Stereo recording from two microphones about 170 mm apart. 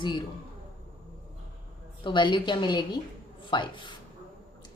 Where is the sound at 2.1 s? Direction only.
30° left (ahead or behind).